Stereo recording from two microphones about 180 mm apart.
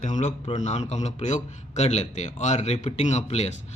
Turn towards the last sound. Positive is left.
turn(degrees=40)  # may be behind; listen again after turning